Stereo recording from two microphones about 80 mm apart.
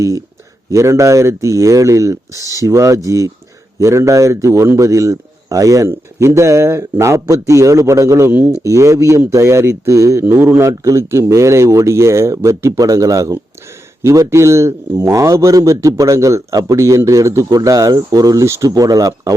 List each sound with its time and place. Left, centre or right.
0.7 s a man's voice: right
2.4 s speech: left
2.6 s a man's voice: right
8.3 s speech: right
8.6 s a man's voice: right